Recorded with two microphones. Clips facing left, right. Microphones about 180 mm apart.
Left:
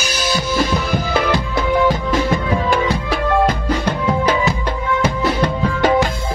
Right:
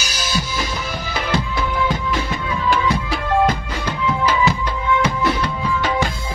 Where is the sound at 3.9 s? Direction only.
60° left (ahead or behind).